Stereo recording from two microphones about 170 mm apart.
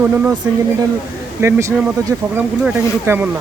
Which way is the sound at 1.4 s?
15° right (ahead or behind).